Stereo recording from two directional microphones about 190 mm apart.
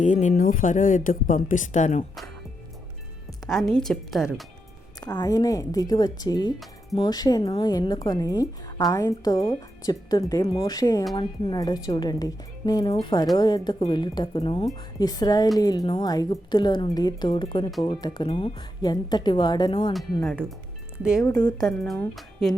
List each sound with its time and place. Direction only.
0.0 s speech: 40° left (ahead or behind)
3.4 s a woman's voice: centre (ahead or behind)
4.9 s speech: 20° left (ahead or behind)
21.0 s a woman's voice: 5° right (ahead or behind)
21.2 s speech: 20° left (ahead or behind)
21.6 s a woman's voice: centre (ahead or behind)